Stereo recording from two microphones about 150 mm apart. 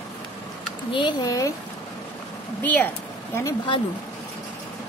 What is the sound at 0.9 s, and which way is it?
Speech, 30° left (ahead or behind).